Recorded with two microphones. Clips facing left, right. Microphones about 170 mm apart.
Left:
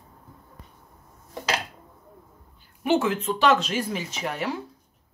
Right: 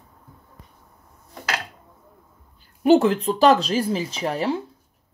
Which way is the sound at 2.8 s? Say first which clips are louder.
Right 7 dB; 35° right (ahead or behind).